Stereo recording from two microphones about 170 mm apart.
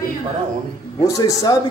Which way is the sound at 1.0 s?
20° left (ahead or behind).